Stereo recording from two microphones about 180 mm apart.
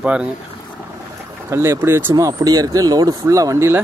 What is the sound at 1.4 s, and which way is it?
Speech, 15° right (ahead or behind).